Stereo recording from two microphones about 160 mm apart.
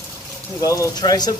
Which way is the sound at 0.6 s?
20° left (ahead or behind).